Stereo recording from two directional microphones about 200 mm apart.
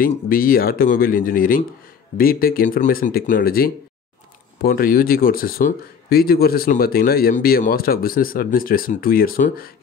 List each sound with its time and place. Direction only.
0.0 s speech: 45° left (ahead or behind)